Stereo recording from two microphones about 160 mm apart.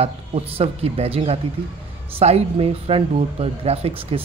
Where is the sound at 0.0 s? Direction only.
35° right (ahead or behind).